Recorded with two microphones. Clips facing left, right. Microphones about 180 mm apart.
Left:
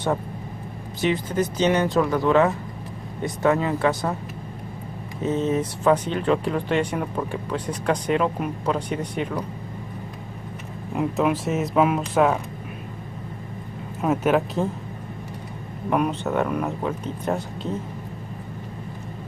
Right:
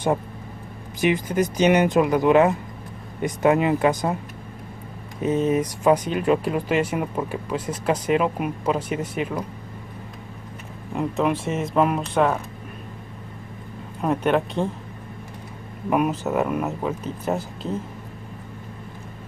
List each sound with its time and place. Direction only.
1.0 s speech: 15° right (ahead or behind)
5.2 s speech: 10° right (ahead or behind)
11.0 s speech: centre (ahead or behind)
14.0 s speech: 5° left (ahead or behind)
15.9 s speech: 5° right (ahead or behind)